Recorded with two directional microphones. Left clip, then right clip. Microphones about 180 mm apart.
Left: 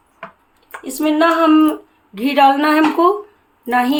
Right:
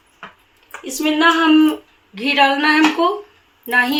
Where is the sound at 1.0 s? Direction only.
60° left (ahead or behind).